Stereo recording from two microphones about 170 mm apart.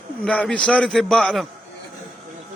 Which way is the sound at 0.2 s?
5° left (ahead or behind).